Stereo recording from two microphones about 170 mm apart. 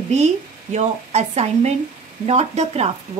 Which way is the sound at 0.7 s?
40° right (ahead or behind).